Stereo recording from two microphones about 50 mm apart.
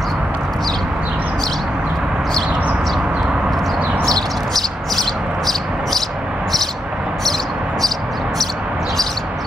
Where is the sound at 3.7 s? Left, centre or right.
Right.